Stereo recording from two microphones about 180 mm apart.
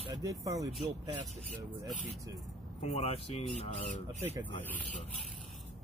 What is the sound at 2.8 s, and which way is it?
Speech, 35° left (ahead or behind).